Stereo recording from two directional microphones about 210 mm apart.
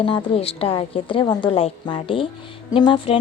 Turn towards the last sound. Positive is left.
turn(degrees=25)  # may be behind; listen again after turning